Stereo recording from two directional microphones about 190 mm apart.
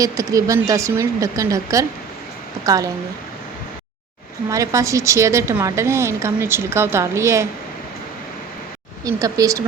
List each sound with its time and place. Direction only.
0.0 s a woman's voice: 20° right (ahead or behind)
4.4 s a woman's voice: 15° right (ahead or behind)
9.0 s a woman's voice: 15° right (ahead or behind)